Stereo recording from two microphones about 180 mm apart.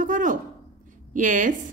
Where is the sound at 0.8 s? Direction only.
45° right (ahead or behind).